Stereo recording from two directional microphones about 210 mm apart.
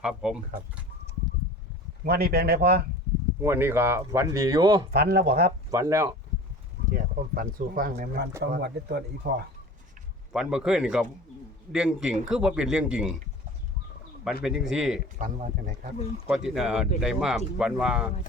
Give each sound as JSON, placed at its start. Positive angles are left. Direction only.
{"t": 0.0, "sound": "speech", "side_deg": -5}
{"t": 2.0, "sound": "speech", "side_deg": -45}
{"t": 3.4, "sound": "speech", "side_deg": -10}
{"t": 4.9, "sound": "speech", "side_deg": -50}
{"t": 5.7, "sound": "speech", "side_deg": -15}
{"t": 6.9, "sound": "speech", "side_deg": -45}
{"t": 10.3, "sound": "speech", "side_deg": -5}
{"t": 14.4, "sound": "speech", "side_deg": 0}
{"t": 15.2, "sound": "speech", "side_deg": -40}
{"t": 16.2, "sound": "speech", "side_deg": -5}